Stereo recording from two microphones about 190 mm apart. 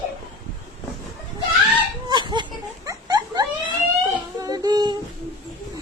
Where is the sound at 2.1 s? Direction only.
25° right (ahead or behind).